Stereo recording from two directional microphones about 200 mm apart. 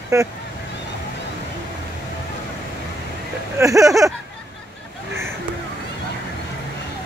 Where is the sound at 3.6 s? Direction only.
15° right (ahead or behind).